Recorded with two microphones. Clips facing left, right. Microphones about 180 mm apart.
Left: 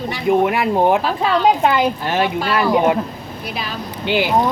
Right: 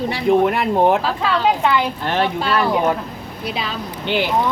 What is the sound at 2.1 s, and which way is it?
Speech, 10° left (ahead or behind).